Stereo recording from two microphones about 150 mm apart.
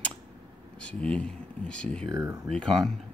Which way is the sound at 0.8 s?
5° left (ahead or behind).